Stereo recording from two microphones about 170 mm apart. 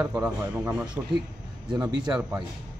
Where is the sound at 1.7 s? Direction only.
20° right (ahead or behind).